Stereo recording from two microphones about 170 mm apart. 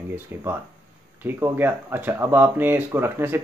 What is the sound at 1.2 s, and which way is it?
Speech, 10° right (ahead or behind).